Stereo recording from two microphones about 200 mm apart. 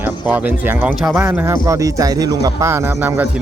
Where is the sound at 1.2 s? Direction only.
10° right (ahead or behind).